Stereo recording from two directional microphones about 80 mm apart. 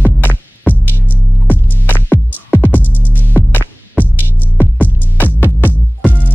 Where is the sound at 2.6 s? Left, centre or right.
Left.